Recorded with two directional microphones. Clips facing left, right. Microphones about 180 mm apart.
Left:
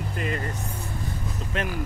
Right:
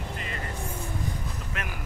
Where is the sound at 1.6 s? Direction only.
30° left (ahead or behind).